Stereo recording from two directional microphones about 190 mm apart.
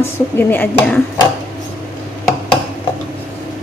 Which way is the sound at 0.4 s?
10° left (ahead or behind).